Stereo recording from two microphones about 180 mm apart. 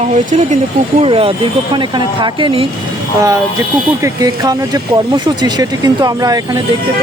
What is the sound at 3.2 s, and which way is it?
Speech, 15° right (ahead or behind).